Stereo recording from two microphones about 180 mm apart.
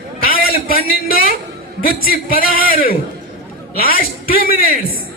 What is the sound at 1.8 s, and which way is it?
A man's voice, 50° left (ahead or behind).